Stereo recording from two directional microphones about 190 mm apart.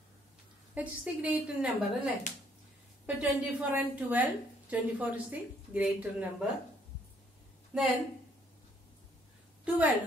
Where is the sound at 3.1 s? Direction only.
5° right (ahead or behind).